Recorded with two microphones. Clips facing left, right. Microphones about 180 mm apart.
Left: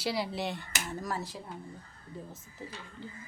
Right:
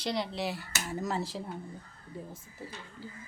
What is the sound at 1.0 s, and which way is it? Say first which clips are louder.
Speech: right 5 dB; 25° right (ahead or behind).